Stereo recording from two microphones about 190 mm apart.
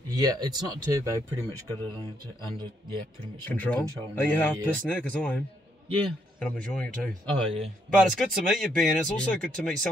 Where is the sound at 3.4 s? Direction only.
10° left (ahead or behind).